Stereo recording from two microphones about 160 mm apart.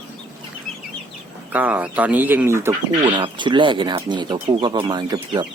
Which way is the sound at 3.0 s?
30° right (ahead or behind).